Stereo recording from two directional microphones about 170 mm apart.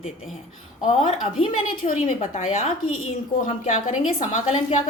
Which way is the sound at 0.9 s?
35° left (ahead or behind).